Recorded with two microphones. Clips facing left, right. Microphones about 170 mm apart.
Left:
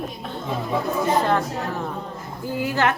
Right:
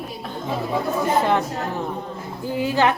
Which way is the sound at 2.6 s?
15° right (ahead or behind).